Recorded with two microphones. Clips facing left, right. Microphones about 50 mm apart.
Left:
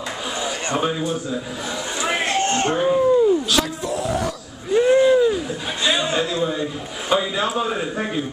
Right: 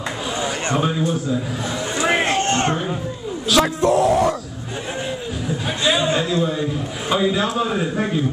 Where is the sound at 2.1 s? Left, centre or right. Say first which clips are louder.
Left 1 dB; right.